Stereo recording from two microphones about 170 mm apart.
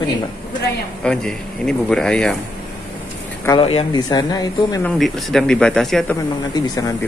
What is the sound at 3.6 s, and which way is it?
Speech, 35° left (ahead or behind).